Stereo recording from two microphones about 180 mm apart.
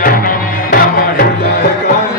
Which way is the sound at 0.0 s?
50° left (ahead or behind).